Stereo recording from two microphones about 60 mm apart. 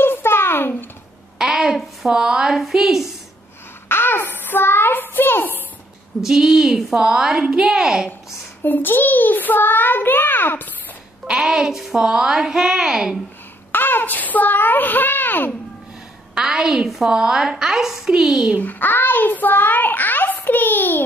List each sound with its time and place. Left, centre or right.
0.0 s a sound: left
1.4 s a woman's voice: centre
3.9 s a child's voice: left
6.2 s speech: centre
7.0 s a woman's voice: centre
8.6 s a child's voice: left
11.2 s a sound: centre
11.5 s a woman's voice: centre
13.7 s a child's voice: left
16.3 s a woman's voice: centre
18.6 s a child's voice: left